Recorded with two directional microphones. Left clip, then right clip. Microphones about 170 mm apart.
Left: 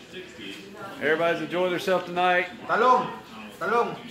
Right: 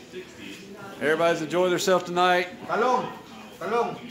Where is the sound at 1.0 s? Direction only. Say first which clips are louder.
Right 1 dB; 25° right (ahead or behind).